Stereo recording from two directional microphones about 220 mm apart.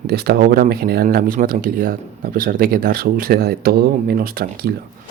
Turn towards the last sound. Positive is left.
turn(degrees=-45)  # may be behind; listen again after turning